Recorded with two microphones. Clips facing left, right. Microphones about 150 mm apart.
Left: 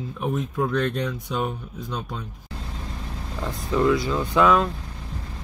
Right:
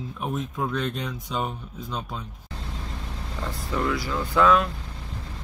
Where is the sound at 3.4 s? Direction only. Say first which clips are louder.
Left 6 dB; 20° left (ahead or behind).